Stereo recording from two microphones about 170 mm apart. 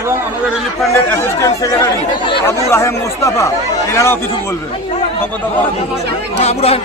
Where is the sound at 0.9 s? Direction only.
20° left (ahead or behind).